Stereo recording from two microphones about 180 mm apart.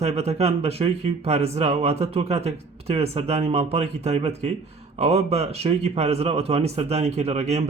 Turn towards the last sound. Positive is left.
turn(degrees=-40)  # may be behind; listen again after turning